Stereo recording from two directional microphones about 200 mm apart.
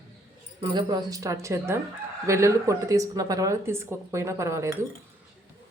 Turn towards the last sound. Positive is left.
turn(degrees=-15)  # may be behind; listen again after turning